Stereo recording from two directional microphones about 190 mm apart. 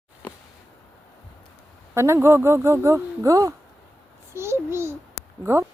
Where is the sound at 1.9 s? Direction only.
15° right (ahead or behind).